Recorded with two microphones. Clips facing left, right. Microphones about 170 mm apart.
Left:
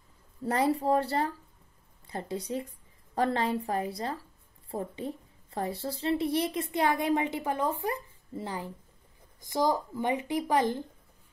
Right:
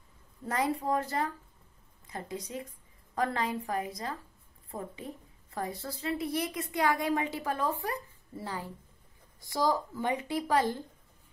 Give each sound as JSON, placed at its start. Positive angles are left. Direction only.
{"t": 0.5, "sound": "a woman's voice", "side_deg": 35}